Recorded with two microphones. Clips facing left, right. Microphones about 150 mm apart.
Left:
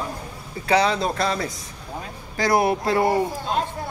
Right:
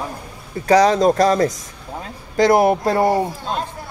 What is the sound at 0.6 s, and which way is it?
Speech, 40° right (ahead or behind).